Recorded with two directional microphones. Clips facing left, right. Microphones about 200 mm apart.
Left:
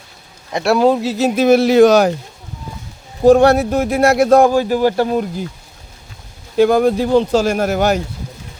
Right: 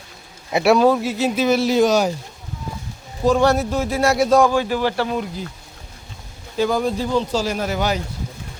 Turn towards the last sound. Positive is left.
turn(degrees=50)  # may be behind; listen again after turning